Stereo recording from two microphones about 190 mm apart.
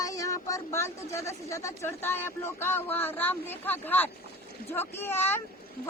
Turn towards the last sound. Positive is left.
turn(degrees=10)  # may be behind; listen again after turning